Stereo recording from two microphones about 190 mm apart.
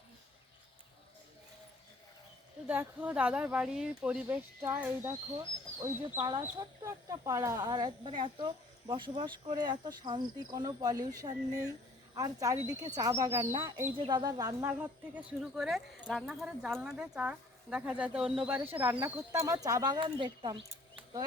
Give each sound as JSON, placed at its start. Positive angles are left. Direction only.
{"t": 2.6, "sound": "speech", "side_deg": -10}
{"t": 14.7, "sound": "speech", "side_deg": -10}